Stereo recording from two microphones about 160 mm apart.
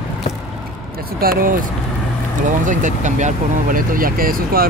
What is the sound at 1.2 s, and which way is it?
Speech, 65° right (ahead or behind).